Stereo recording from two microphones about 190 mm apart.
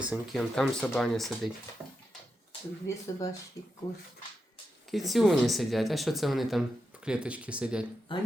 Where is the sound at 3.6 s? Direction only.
15° left (ahead or behind).